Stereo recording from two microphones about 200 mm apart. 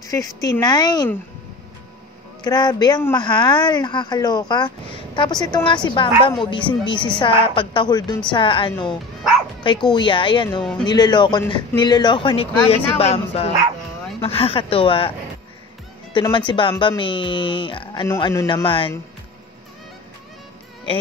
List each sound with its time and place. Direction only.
0.0 s speech: 15° left (ahead or behind)
2.4 s speech: 20° left (ahead or behind)
16.1 s speech: 25° left (ahead or behind)